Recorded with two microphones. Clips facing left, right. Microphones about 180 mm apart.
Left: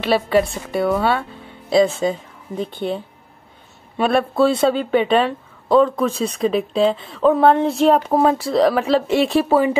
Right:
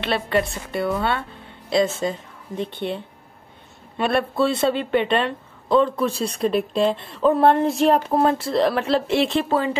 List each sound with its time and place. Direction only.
0.0 s speech: centre (ahead or behind)
4.0 s speech: centre (ahead or behind)